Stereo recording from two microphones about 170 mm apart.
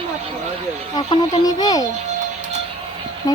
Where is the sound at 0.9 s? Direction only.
25° left (ahead or behind).